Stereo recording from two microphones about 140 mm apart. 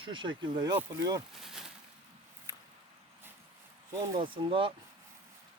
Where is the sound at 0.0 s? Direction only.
35° right (ahead or behind).